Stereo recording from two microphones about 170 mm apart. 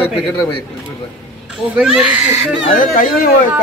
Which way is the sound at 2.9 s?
55° left (ahead or behind).